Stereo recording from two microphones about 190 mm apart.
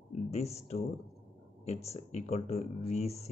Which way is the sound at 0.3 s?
35° left (ahead or behind).